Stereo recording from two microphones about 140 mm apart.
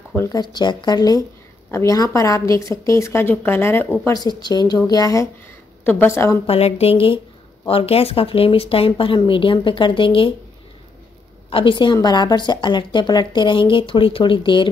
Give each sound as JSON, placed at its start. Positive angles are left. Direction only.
{"t": 0.1, "sound": "speech", "side_deg": 20}
{"t": 0.4, "sound": "a woman's voice", "side_deg": 30}
{"t": 4.0, "sound": "speech", "side_deg": 30}
{"t": 5.9, "sound": "a woman's voice", "side_deg": 15}
{"t": 6.4, "sound": "a woman's voice", "side_deg": 45}
{"t": 11.5, "sound": "a woman's voice", "side_deg": 35}